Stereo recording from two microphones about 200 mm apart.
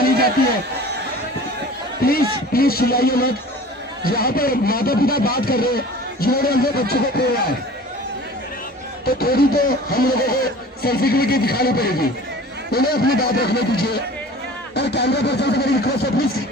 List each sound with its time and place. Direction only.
2.0 s speech: 50° left (ahead or behind)
9.0 s speech: 50° left (ahead or behind)